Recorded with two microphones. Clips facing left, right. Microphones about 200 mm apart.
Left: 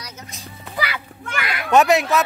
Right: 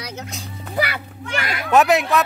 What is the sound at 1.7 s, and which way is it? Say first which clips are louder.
Speech: even; centre (ahead or behind).